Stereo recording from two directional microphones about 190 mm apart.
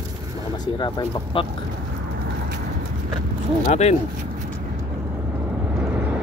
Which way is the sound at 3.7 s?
35° left (ahead or behind).